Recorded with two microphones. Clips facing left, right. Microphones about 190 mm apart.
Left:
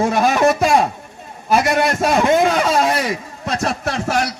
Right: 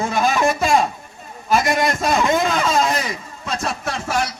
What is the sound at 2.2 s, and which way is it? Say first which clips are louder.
A man's voice: left 6 dB; 65° left (ahead or behind).